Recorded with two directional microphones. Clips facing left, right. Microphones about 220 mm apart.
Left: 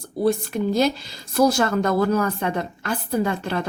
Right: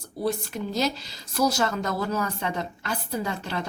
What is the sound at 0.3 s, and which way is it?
Speech, 55° left (ahead or behind).